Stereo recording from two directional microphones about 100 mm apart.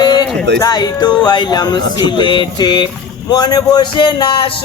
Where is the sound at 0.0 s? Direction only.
45° left (ahead or behind).